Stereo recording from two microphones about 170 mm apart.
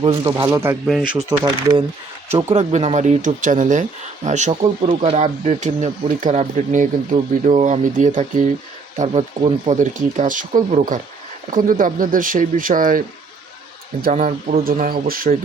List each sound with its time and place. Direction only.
0.0 s speech: 25° right (ahead or behind)
0.9 s speech: centre (ahead or behind)
1.3 s speech: 25° right (ahead or behind)
2.3 s speech: 40° right (ahead or behind)
14.0 s speech: 45° right (ahead or behind)